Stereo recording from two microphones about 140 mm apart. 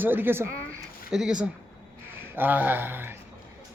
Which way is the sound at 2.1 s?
15° right (ahead or behind).